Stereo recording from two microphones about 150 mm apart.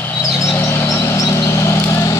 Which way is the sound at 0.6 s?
20° left (ahead or behind).